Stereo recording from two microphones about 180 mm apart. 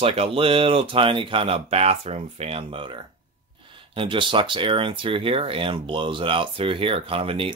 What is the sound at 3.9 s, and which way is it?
Speech, 30° right (ahead or behind).